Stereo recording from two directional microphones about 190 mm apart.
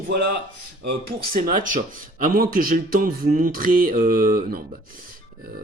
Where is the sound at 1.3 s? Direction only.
45° right (ahead or behind).